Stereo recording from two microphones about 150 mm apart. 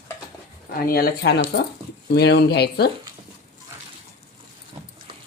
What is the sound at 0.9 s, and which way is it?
Speech, 90° left.